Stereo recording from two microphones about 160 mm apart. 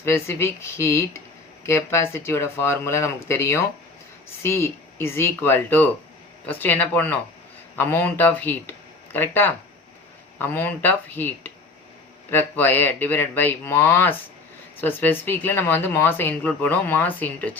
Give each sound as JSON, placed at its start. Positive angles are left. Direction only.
{"t": 0.0, "sound": "speech", "side_deg": 15}